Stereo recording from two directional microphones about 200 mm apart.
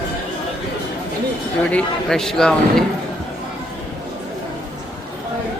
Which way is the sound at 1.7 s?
5° left (ahead or behind).